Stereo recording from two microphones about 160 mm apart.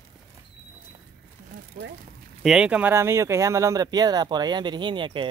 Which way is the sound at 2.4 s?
5° right (ahead or behind).